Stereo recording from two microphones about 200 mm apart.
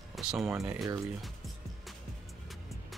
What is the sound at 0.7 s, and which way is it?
Speech, centre (ahead or behind).